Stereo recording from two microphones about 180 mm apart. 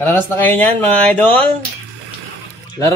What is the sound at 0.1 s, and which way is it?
Speech, 10° left (ahead or behind).